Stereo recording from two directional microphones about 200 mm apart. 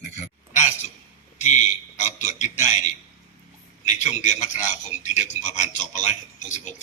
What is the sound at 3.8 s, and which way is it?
A man's voice, 35° left (ahead or behind).